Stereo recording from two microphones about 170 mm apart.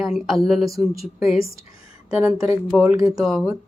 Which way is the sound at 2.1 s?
15° right (ahead or behind).